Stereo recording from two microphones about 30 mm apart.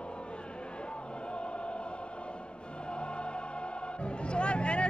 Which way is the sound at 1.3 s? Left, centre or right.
Left.